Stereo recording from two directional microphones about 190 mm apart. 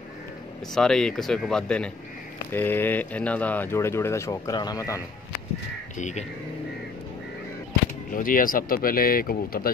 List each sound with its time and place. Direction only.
0.7 s speech: 5° left (ahead or behind)
5.9 s speech: 40° left (ahead or behind)
8.1 s speech: 45° left (ahead or behind)